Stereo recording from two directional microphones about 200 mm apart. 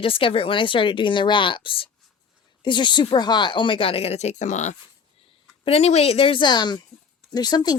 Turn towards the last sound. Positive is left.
turn(degrees=20)  # may be behind; listen again after turning